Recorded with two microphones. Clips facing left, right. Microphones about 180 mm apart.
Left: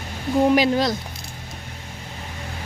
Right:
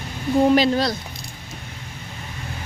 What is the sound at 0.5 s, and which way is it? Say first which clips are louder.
Speech: even; 15° left (ahead or behind).